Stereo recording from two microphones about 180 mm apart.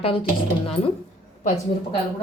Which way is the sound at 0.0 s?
30° left (ahead or behind).